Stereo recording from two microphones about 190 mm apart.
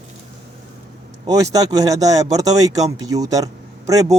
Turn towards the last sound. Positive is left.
turn(degrees=-20)  # may be behind; listen again after turning